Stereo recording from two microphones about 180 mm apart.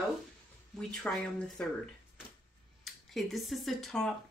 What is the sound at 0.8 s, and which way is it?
Speech, 5° left (ahead or behind).